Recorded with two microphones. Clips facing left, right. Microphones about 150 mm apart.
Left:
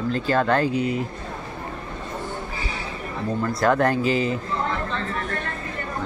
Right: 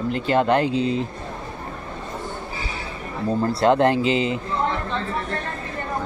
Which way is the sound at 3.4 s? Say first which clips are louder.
Right 3 dB; 25° right (ahead or behind).